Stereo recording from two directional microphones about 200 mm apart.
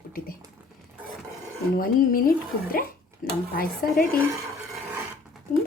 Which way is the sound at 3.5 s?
45° left (ahead or behind).